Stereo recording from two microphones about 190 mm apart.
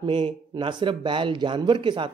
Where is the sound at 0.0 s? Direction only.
25° right (ahead or behind).